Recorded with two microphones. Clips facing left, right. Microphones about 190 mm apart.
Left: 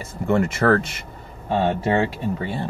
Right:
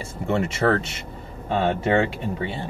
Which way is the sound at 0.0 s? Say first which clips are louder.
Left 3 dB; 25° right (ahead or behind).